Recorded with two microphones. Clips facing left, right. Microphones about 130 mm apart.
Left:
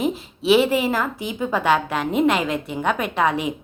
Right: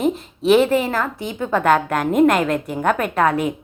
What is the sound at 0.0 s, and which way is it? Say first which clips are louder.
A woman's voice: right 4 dB; 5° left (ahead or behind).